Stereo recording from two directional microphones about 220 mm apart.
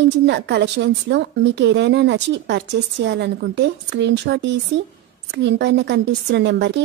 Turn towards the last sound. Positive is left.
turn(degrees=-55)  # may be behind; listen again after turning